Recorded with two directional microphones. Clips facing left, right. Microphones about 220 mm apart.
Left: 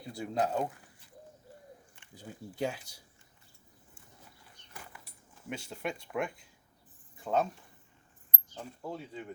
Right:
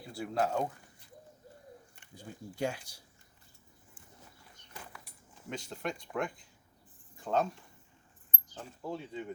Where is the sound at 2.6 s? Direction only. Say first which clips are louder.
Even; 5° left (ahead or behind).